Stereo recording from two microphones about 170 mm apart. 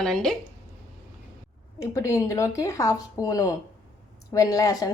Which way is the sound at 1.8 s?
15° left (ahead or behind).